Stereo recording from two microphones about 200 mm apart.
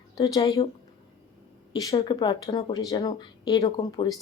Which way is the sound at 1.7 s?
20° left (ahead or behind).